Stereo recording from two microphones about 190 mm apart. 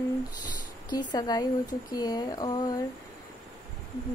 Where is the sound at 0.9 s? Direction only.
20° left (ahead or behind).